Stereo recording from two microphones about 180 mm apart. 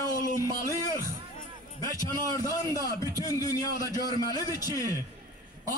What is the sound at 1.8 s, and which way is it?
A man's voice, 20° left (ahead or behind).